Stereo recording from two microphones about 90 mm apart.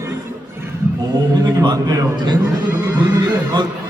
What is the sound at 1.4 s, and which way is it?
Speech, 50° right (ahead or behind).